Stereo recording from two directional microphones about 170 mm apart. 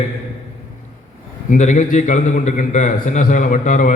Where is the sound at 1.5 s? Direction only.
45° left (ahead or behind).